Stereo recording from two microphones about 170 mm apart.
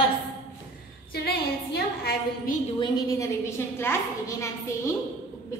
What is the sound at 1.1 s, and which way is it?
A woman's voice, 70° left (ahead or behind).